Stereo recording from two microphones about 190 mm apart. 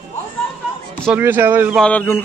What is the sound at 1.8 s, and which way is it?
Speech, 5° left (ahead or behind).